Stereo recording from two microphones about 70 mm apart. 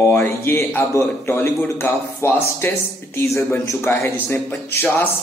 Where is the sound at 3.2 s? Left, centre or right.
Left.